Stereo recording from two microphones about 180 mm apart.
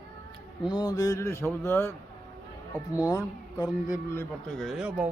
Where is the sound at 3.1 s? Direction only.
20° left (ahead or behind).